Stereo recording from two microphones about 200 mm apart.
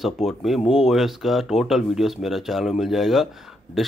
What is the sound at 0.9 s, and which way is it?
Speech, centre (ahead or behind).